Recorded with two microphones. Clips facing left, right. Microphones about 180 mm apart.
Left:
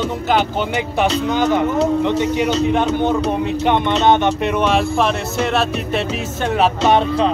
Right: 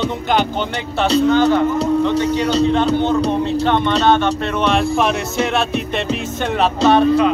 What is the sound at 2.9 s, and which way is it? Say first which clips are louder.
Music: right 1 dB; 15° left (ahead or behind).